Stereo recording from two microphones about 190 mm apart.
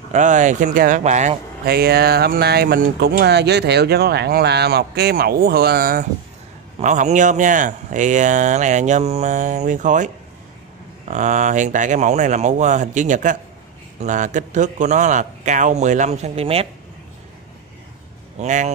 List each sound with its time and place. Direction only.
0.1 s speech: 40° right (ahead or behind)
1.7 s speech: 55° right (ahead or behind)
6.8 s speech: 40° right (ahead or behind)
18.4 s speech: 40° right (ahead or behind)